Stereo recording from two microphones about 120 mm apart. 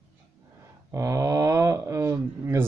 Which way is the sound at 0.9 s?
25° right (ahead or behind).